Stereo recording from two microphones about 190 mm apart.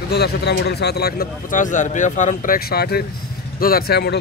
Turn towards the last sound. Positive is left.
turn(degrees=55)  # may be behind; listen again after turning